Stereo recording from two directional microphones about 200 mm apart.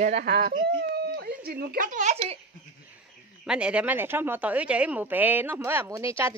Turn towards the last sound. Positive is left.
turn(degrees=-15)  # may be behind; listen again after turning